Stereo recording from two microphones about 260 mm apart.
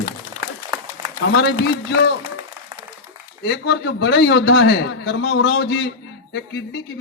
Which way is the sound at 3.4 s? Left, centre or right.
Left.